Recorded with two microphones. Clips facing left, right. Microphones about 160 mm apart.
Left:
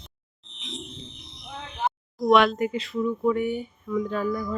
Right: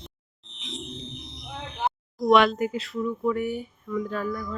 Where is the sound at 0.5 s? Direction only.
Centre (ahead or behind).